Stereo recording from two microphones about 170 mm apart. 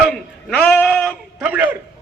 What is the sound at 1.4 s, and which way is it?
Speech, 10° right (ahead or behind).